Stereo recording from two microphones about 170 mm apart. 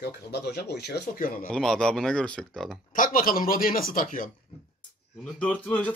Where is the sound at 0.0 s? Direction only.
75° left (ahead or behind); by 1.5 s 55° left (ahead or behind).